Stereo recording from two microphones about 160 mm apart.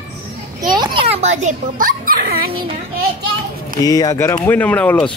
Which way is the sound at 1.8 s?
65° right (ahead or behind).